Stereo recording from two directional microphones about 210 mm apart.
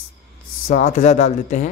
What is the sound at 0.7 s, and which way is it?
Speech, 35° left (ahead or behind).